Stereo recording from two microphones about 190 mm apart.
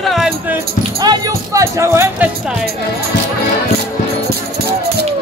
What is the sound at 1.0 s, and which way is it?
Speech, 20° right (ahead or behind).